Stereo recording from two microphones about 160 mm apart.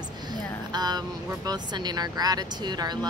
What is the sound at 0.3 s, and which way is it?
Speech, 25° right (ahead or behind).